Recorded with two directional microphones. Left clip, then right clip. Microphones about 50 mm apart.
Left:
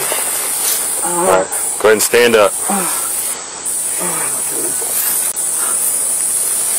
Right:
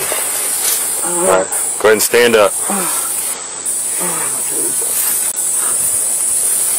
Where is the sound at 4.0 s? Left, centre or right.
Left.